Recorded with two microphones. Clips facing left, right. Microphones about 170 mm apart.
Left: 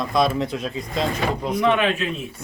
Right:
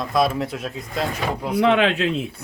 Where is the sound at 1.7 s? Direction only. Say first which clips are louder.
Right 3 dB; 90° right.